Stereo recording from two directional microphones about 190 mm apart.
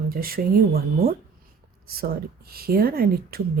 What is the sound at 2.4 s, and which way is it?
Speech, 50° right (ahead or behind).